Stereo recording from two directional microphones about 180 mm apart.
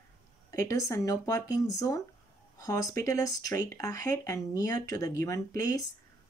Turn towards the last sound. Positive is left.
turn(degrees=20)  # may be behind; listen again after turning